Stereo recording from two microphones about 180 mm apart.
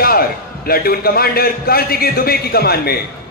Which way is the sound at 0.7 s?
55° left (ahead or behind).